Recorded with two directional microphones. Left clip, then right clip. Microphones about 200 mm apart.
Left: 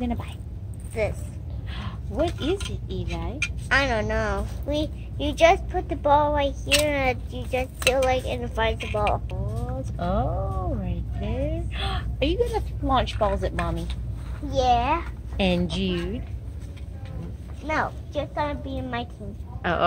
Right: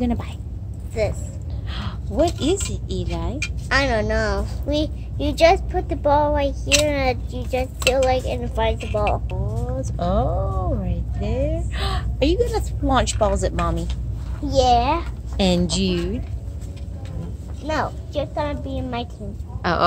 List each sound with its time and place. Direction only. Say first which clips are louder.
0.0 s speech: right 5 dB; 15° right (ahead or behind)
1.7 s speech: right 5 dB; 20° right (ahead or behind)
3.6 s speech: right 3 dB; centre (ahead or behind)
8.7 s a woman's voice: right 3 dB; 15° left (ahead or behind)
9.8 s a woman's voice: right 4 dB; 15° right (ahead or behind)
17.6 s speech: right 2 dB; centre (ahead or behind)